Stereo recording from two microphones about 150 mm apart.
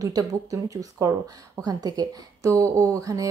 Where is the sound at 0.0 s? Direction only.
25° right (ahead or behind).